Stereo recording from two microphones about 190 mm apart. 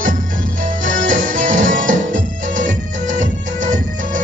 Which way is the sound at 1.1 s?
45° right (ahead or behind).